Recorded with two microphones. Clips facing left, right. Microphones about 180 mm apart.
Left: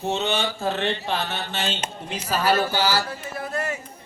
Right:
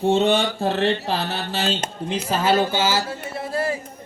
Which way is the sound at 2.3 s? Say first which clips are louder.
Right 2 dB; 25° right (ahead or behind).